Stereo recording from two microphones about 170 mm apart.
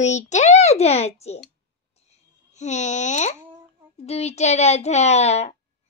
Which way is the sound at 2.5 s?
45° left (ahead or behind).